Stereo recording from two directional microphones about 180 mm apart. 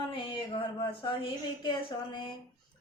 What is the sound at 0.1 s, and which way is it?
Speech, 30° left (ahead or behind).